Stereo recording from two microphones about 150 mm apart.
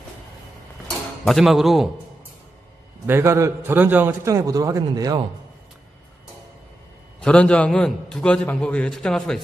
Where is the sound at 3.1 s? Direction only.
15° right (ahead or behind).